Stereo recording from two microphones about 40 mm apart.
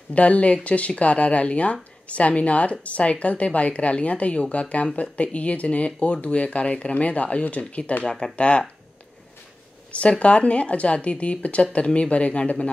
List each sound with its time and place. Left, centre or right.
0.1 s a woman's voice: left
9.9 s a woman's voice: left